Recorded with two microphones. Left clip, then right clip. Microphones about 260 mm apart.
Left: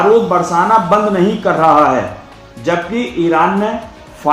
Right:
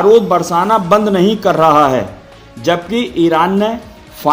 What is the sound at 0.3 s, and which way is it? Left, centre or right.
Speech, centre.